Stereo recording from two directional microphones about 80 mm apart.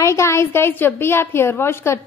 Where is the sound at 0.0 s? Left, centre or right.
Left.